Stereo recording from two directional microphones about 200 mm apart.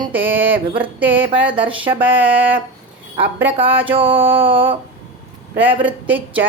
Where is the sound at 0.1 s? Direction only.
10° right (ahead or behind).